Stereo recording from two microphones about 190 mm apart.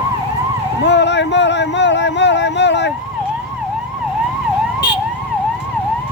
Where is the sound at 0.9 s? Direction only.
65° left (ahead or behind).